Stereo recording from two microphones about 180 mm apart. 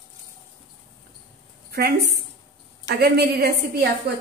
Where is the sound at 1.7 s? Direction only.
60° right (ahead or behind).